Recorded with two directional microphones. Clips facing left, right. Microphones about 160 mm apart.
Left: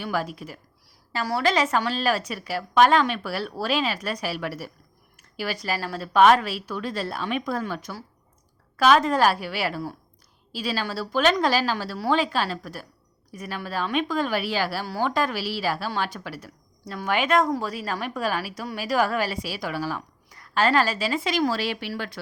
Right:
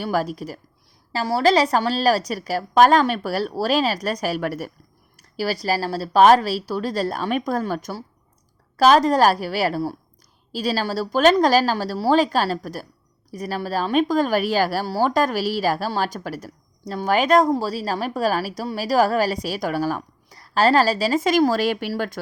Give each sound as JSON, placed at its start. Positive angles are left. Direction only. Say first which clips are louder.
{"t": 0.0, "sound": "a woman's voice", "louder": "right 5 dB", "side_deg": -40}
{"t": 5.1, "sound": "a woman's voice", "louder": "right 6 dB", "side_deg": -35}